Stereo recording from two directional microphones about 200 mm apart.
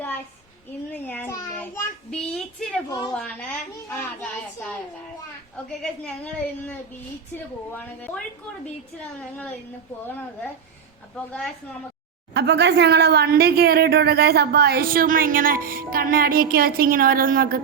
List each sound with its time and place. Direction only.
1.0 s child singing: 10° left (ahead or behind)
2.0 s a sound: 5° left (ahead or behind)
3.2 s a woman's voice: 5° left (ahead or behind)
5.8 s a woman's voice: 10° left (ahead or behind)
10.1 s a woman's voice: 10° left (ahead or behind)
12.3 s speech: 60° right (ahead or behind)